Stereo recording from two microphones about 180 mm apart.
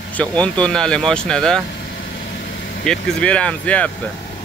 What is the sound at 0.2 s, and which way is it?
Speech, 5° left (ahead or behind).